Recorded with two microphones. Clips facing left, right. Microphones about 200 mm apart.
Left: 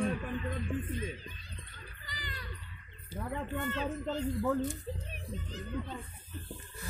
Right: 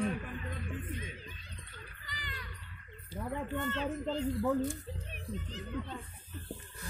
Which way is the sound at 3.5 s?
10° left (ahead or behind).